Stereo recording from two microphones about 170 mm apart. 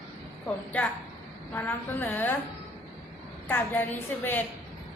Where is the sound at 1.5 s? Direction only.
10° left (ahead or behind).